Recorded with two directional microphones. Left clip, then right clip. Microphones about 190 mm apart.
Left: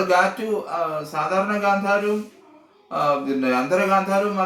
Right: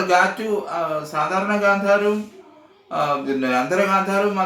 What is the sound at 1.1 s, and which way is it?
Speech, 10° right (ahead or behind).